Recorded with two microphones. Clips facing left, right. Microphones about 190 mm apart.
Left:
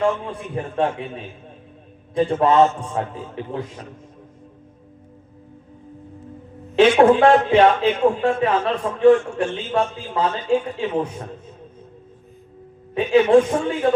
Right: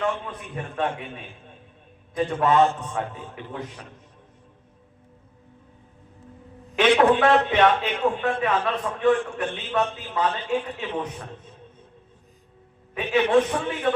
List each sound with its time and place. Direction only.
0.0 s a man's voice: 30° left (ahead or behind)
6.7 s a man's voice: 30° left (ahead or behind)
12.9 s a man's voice: 30° left (ahead or behind)